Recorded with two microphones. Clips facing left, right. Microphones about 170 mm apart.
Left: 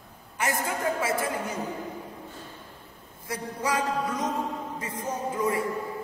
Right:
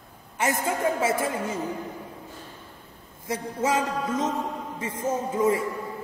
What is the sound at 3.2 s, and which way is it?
A man's voice, 25° right (ahead or behind).